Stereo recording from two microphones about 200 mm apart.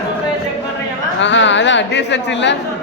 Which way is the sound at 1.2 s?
65° left (ahead or behind).